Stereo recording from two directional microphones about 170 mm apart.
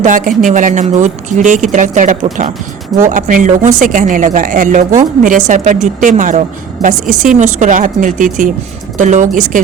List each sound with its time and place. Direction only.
0.0 s speech: 50° right (ahead or behind)